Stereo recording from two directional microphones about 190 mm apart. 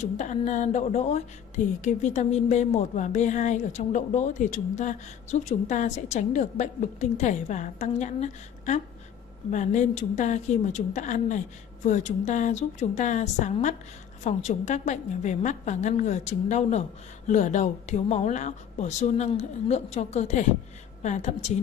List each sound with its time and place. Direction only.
0.0 s a woman's voice: 40° left (ahead or behind)